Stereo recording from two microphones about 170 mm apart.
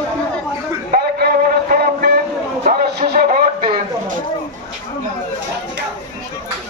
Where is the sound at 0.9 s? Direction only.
65° right (ahead or behind).